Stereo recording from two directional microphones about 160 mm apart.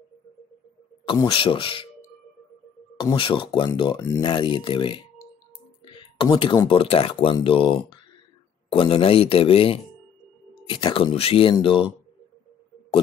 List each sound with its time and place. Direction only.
1.0 s speech: 30° left (ahead or behind)
3.2 s speech: 30° left (ahead or behind)
6.2 s speech: 25° left (ahead or behind)